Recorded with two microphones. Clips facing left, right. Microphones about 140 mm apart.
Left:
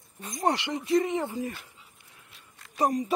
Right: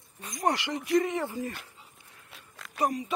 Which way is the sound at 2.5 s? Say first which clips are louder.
Right 8 dB; 90° right.